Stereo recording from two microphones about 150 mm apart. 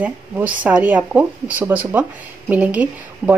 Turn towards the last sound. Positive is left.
turn(degrees=-10)  # may be behind; listen again after turning